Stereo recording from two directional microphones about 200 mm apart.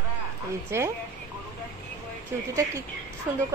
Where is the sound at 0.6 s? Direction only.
15° right (ahead or behind).